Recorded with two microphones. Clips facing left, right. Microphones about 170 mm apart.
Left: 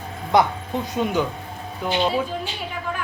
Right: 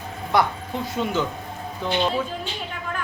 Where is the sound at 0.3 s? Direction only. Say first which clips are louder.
Left 3 dB; 20° left (ahead or behind).